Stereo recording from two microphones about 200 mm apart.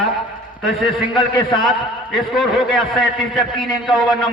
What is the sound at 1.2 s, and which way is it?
Speech, 25° left (ahead or behind).